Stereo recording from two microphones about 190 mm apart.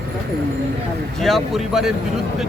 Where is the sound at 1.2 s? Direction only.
Centre (ahead or behind).